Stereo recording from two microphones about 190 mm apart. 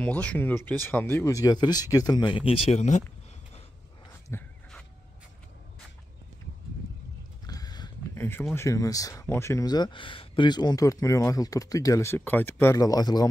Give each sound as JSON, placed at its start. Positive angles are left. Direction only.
{"t": 0.0, "sound": "speech", "side_deg": 5}
{"t": 4.3, "sound": "dog", "side_deg": 10}
{"t": 7.4, "sound": "speech", "side_deg": 20}